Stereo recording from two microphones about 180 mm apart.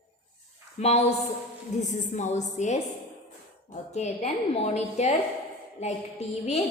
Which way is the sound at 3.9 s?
35° left (ahead or behind).